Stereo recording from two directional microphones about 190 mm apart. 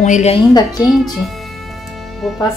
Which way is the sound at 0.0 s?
35° left (ahead or behind).